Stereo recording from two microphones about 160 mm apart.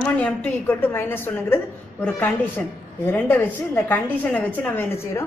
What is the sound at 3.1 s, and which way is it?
A woman's voice, 10° left (ahead or behind).